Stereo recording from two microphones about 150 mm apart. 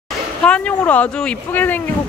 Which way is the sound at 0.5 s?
10° left (ahead or behind).